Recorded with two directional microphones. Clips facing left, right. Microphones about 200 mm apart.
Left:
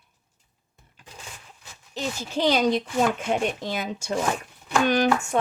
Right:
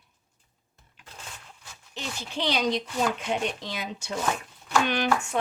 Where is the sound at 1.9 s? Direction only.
45° left (ahead or behind).